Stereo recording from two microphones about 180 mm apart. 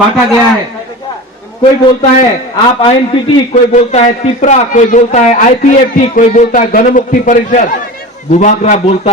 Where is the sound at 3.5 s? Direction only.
40° left (ahead or behind).